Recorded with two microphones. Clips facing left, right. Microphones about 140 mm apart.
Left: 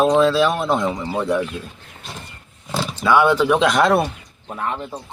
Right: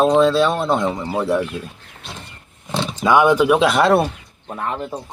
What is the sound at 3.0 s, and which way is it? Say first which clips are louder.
Speech: right 2 dB; 15° right (ahead or behind).